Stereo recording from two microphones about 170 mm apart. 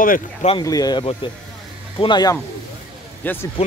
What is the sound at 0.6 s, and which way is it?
Speech, 20° left (ahead or behind).